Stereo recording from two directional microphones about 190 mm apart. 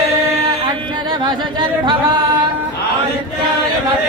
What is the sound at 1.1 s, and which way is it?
Speech, 25° right (ahead or behind).